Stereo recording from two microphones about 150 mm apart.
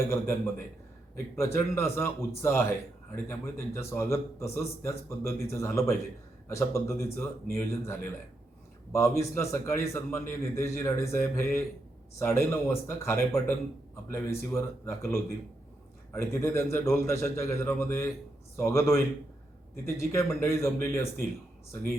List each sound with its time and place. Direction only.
0.1 s a man's voice: 15° left (ahead or behind)